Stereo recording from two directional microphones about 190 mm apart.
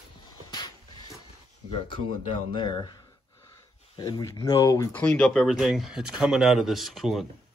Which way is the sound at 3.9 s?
20° left (ahead or behind).